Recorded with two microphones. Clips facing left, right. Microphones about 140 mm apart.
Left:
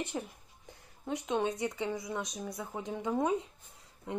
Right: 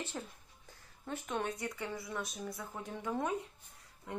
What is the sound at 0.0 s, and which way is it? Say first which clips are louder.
Speech: left 5 dB; 15° left (ahead or behind).